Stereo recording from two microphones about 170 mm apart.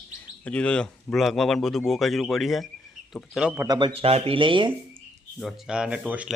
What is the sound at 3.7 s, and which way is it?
Speech, 30° right (ahead or behind).